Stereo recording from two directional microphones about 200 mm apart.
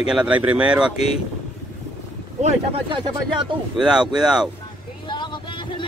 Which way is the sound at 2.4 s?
25° right (ahead or behind).